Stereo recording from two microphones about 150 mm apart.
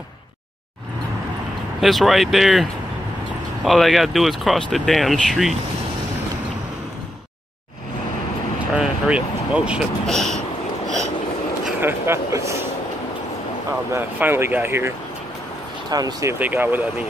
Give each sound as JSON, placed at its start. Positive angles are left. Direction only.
{"t": 1.8, "sound": "speech", "side_deg": 0}
{"t": 8.7, "sound": "speech", "side_deg": -5}
{"t": 11.8, "sound": "speech", "side_deg": -20}
{"t": 13.9, "sound": "speech", "side_deg": -15}
{"t": 16.3, "sound": "speech", "side_deg": -10}